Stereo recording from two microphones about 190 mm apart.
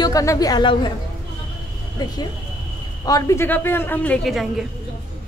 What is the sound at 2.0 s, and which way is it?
A woman's voice, 20° left (ahead or behind).